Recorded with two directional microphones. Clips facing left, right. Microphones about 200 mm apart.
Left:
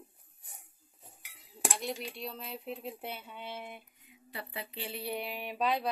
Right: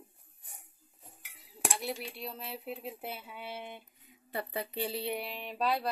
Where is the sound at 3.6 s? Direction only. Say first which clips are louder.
Right 1 dB; 25° right (ahead or behind).